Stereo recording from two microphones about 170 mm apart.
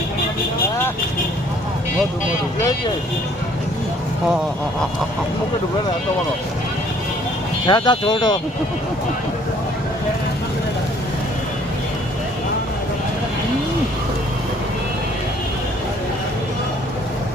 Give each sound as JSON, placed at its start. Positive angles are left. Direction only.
{"t": 7.7, "sound": "speech", "side_deg": 30}